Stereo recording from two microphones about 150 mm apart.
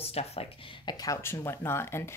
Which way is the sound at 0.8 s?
25° left (ahead or behind).